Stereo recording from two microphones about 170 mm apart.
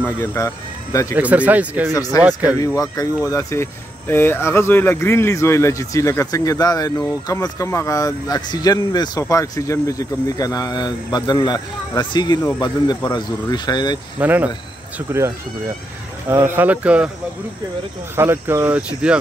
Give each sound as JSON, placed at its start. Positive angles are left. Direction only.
{"t": 0.0, "sound": "speech", "side_deg": 15}
{"t": 1.1, "sound": "speech", "side_deg": -10}
{"t": 2.0, "sound": "speech", "side_deg": 20}
{"t": 14.2, "sound": "speech", "side_deg": -10}
{"t": 16.3, "sound": "speech", "side_deg": -15}
{"t": 18.1, "sound": "speech", "side_deg": -15}